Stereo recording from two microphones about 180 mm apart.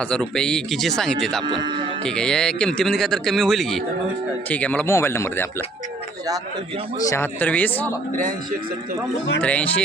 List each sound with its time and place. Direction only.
0.0 s speech: 5° left (ahead or behind)
1.5 s speech: 25° right (ahead or behind)
2.0 s speech: 5° left (ahead or behind)
7.1 s speech: 10° left (ahead or behind)
9.4 s speech: 5° left (ahead or behind)